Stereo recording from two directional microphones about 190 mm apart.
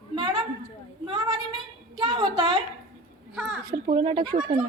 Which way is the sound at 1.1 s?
20° right (ahead or behind).